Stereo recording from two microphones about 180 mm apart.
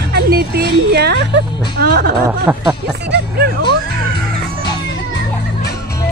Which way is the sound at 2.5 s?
10° right (ahead or behind).